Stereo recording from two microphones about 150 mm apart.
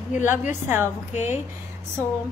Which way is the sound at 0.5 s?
15° right (ahead or behind).